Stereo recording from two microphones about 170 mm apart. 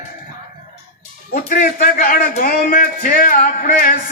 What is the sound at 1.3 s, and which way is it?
A man's voice, 50° left (ahead or behind).